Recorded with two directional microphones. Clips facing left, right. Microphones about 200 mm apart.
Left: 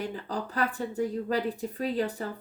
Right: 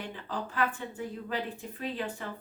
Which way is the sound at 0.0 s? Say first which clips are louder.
Left 4 dB; 40° left (ahead or behind).